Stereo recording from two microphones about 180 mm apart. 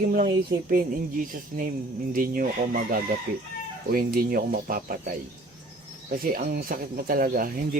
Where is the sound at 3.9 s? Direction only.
55° right (ahead or behind).